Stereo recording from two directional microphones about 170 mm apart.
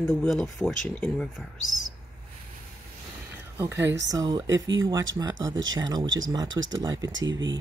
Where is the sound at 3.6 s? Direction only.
15° right (ahead or behind).